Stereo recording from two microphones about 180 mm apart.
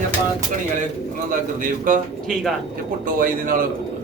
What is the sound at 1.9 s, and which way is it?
Speech, 45° right (ahead or behind).